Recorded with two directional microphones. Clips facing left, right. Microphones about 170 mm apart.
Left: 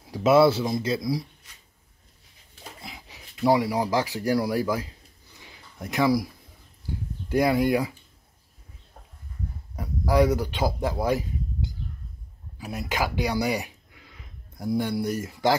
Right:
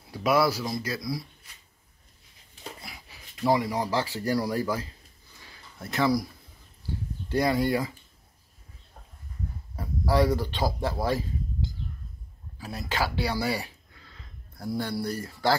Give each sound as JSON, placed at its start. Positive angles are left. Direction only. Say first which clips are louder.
{"t": 0.1, "sound": "speech", "louder": "left 6 dB", "side_deg": 25}
{"t": 2.8, "sound": "a sound", "louder": "left 3 dB", "side_deg": 20}
{"t": 3.3, "sound": "speech", "louder": "left 3 dB", "side_deg": 10}
{"t": 5.4, "sound": "a sound", "louder": "left 3 dB", "side_deg": 15}
{"t": 7.2, "sound": "speech", "louder": "left 3 dB", "side_deg": 10}
{"t": 9.8, "sound": "speech", "louder": "left 3 dB", "side_deg": 15}
{"t": 12.5, "sound": "speech", "louder": "left 2 dB", "side_deg": 15}